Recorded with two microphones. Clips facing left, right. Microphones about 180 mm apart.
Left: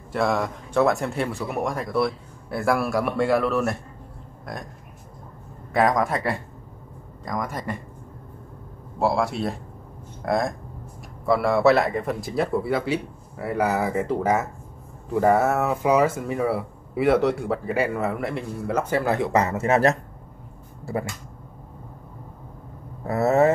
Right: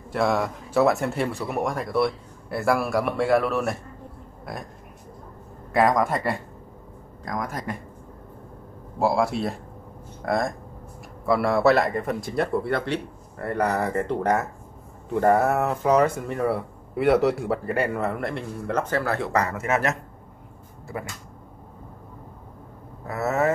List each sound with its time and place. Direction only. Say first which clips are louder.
0.1 s speech: even; centre (ahead or behind)
5.7 s speech: even; centre (ahead or behind)
9.0 s speech: even; centre (ahead or behind); by 20.0 s 35° left (ahead or behind)
23.0 s speech: left 5 dB; 30° left (ahead or behind)